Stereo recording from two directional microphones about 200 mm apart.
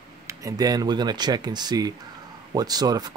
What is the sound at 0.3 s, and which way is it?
Speech, 15° right (ahead or behind).